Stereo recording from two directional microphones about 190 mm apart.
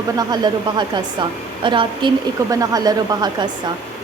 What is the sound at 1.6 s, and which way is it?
Speech, 25° right (ahead or behind).